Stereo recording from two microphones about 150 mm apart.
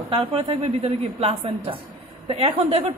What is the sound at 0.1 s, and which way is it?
A woman's voice, 40° right (ahead or behind).